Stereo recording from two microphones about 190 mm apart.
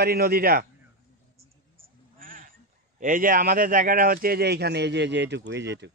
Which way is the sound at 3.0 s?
45° right (ahead or behind).